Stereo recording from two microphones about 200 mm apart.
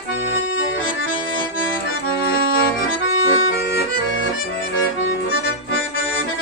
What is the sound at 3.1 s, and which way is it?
Accordion, 70° left (ahead or behind).